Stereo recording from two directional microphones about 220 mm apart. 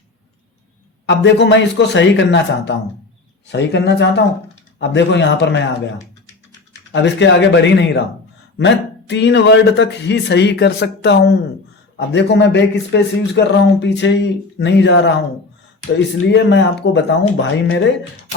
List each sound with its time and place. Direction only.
1.0 s speech: 55° left (ahead or behind)
6.9 s speech: 55° left (ahead or behind)